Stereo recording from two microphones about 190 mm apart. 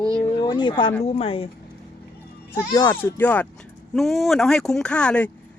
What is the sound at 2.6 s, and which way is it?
Speech, 15° left (ahead or behind).